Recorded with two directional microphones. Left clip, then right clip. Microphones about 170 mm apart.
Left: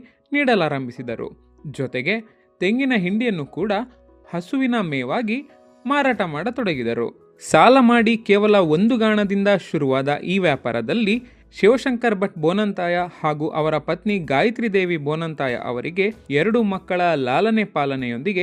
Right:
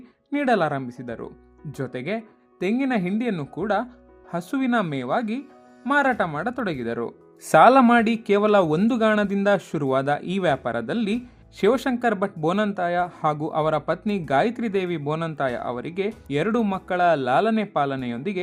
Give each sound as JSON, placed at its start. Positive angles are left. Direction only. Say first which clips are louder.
{"t": 0.3, "sound": "speech", "louder": "left 3 dB", "side_deg": 20}